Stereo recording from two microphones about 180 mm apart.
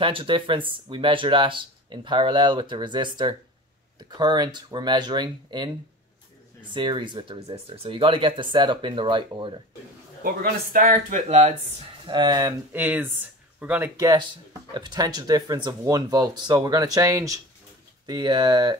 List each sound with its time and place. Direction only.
0.0 s speech: 30° right (ahead or behind)
6.7 s speech: 25° right (ahead or behind)
10.2 s speech: 55° right (ahead or behind); by 11.5 s 40° right (ahead or behind)
12.1 s speech: 25° right (ahead or behind)
12.7 s speech: 10° right (ahead or behind)